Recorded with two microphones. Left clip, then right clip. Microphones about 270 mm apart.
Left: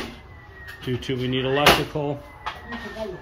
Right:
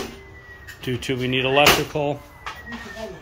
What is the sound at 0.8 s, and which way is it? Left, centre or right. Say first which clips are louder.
Speech: right 2 dB; centre.